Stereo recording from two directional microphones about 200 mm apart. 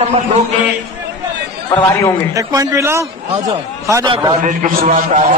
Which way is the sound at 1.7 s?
15° left (ahead or behind).